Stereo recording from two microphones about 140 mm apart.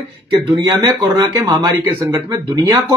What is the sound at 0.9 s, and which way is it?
Speech, 30° right (ahead or behind).